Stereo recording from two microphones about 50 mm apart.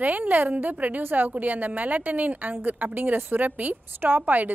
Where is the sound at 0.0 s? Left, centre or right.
Right.